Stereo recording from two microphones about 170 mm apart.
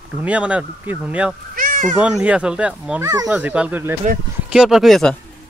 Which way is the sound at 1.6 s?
55° right (ahead or behind).